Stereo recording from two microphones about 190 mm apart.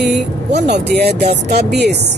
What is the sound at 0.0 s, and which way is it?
Vehicle, 65° right (ahead or behind).